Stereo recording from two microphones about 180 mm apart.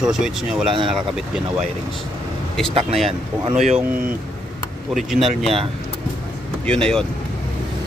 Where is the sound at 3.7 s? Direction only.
10° right (ahead or behind).